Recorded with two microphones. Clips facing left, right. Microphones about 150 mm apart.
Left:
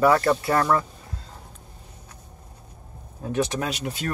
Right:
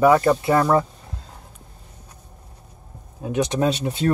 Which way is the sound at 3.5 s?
30° right (ahead or behind).